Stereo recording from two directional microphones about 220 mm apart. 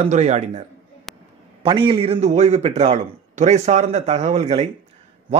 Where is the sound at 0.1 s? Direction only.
30° right (ahead or behind).